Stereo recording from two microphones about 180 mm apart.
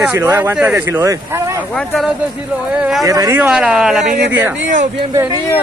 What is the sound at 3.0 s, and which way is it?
Speech, 20° right (ahead or behind).